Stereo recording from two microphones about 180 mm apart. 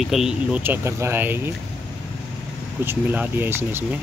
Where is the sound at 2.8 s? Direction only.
10° right (ahead or behind).